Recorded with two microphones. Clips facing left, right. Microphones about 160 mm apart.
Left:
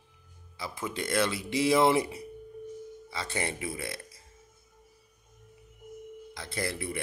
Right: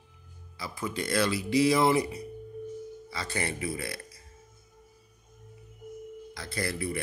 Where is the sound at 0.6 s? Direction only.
20° left (ahead or behind).